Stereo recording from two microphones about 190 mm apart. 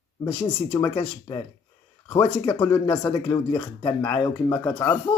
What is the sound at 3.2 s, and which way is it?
Speech, 20° left (ahead or behind).